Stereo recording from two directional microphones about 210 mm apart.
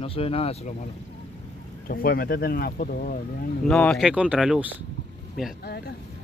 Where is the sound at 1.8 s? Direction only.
45° left (ahead or behind).